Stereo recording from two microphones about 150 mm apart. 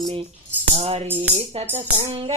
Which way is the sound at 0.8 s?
40° right (ahead or behind).